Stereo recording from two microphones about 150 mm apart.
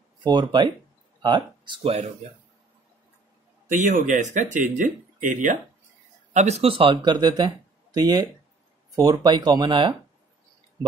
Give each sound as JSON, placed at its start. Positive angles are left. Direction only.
{"t": 0.2, "sound": "speech", "side_deg": -30}
{"t": 3.6, "sound": "speech", "side_deg": -55}
{"t": 6.3, "sound": "speech", "side_deg": -45}